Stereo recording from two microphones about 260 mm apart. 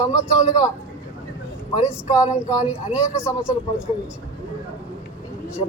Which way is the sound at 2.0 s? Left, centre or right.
Centre.